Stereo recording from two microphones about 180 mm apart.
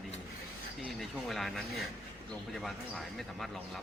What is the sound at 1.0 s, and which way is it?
A man's voice, centre (ahead or behind).